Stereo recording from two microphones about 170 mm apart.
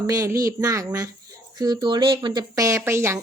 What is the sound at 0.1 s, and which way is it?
A woman's voice, 20° right (ahead or behind).